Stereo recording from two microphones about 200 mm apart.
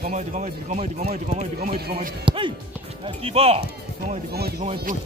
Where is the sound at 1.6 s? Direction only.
45° right (ahead or behind).